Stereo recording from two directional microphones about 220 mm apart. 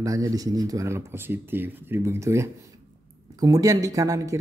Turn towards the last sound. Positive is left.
turn(degrees=-15)  # may be behind; listen again after turning